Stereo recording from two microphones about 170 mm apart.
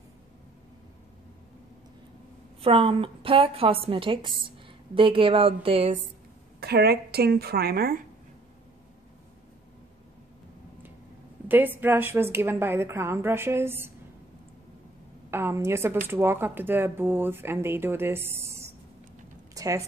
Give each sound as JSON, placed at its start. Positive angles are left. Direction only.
{"t": 2.6, "sound": "a woman's voice", "side_deg": -35}
{"t": 6.6, "sound": "a woman's voice", "side_deg": -70}
{"t": 11.4, "sound": "speech", "side_deg": -10}
{"t": 15.3, "sound": "speech", "side_deg": -15}
{"t": 19.5, "sound": "a sound", "side_deg": -20}